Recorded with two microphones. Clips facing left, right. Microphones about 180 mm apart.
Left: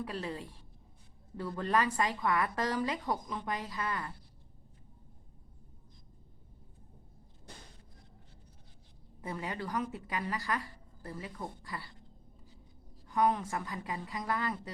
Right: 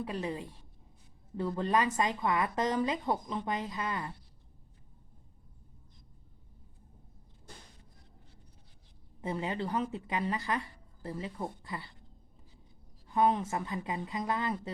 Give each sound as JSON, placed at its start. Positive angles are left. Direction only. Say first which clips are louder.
{"t": 0.0, "sound": "a woman's voice", "louder": "right 3 dB", "side_deg": -20}
{"t": 9.2, "sound": "speech", "louder": "right 4 dB", "side_deg": -25}
{"t": 13.1, "sound": "speech", "louder": "right 2 dB", "side_deg": -25}